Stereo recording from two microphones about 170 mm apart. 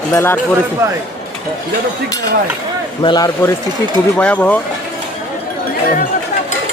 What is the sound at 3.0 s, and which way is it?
Speech, 25° left (ahead or behind).